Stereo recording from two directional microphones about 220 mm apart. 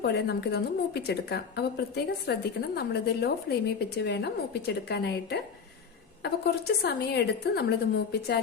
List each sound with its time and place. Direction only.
0.0 s a woman's voice: 50° left (ahead or behind)